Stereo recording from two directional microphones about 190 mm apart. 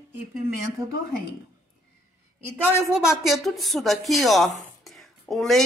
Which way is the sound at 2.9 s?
5° right (ahead or behind).